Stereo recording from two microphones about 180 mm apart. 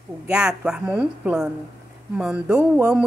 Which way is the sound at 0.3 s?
5° right (ahead or behind).